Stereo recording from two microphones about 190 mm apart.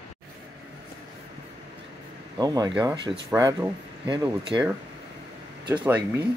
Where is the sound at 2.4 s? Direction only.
20° right (ahead or behind).